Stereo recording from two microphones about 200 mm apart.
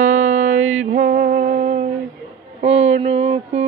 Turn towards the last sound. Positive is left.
turn(degrees=-30)  # may be behind; listen again after turning